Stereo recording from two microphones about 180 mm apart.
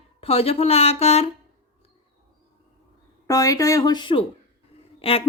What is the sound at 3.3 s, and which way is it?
A woman's voice, 20° left (ahead or behind).